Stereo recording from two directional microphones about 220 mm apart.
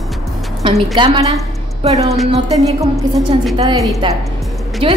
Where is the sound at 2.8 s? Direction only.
15° right (ahead or behind).